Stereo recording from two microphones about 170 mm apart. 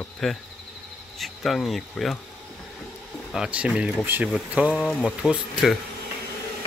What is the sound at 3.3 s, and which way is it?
Speech, 5° right (ahead or behind).